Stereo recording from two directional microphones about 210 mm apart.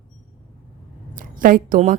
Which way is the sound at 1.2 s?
40° right (ahead or behind).